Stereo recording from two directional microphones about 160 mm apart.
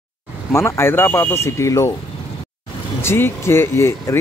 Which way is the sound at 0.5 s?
15° left (ahead or behind).